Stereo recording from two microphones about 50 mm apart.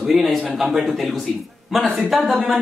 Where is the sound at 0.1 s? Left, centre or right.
Centre.